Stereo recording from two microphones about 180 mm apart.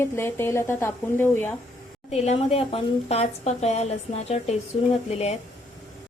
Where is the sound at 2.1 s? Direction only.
35° left (ahead or behind).